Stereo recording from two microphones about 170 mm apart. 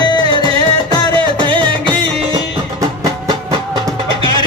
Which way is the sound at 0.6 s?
25° left (ahead or behind).